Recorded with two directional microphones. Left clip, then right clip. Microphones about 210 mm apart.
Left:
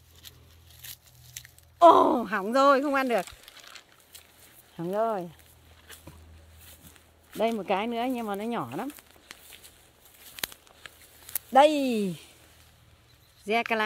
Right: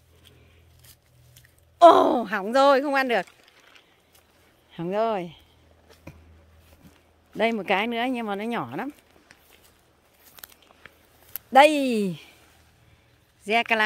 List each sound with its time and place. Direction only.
1.3 s speech: 10° right (ahead or behind)
3.3 s crumpling: 55° left (ahead or behind)
4.7 s speech: 25° right (ahead or behind)
7.3 s speech: 20° right (ahead or behind)
10.8 s a sound: 10° right (ahead or behind)
11.5 s speech: 25° right (ahead or behind)
13.5 s speech: 10° right (ahead or behind)